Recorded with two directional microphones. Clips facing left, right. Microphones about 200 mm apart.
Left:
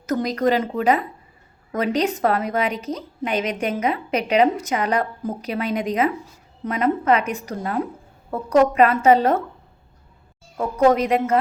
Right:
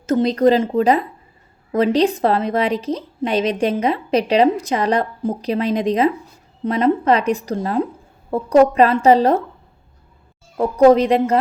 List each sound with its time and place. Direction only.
0.0 s a woman's voice: 30° right (ahead or behind)
10.6 s a woman's voice: 35° right (ahead or behind)